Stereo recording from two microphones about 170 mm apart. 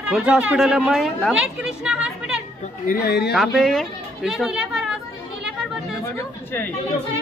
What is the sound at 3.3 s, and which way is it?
Speech, centre (ahead or behind).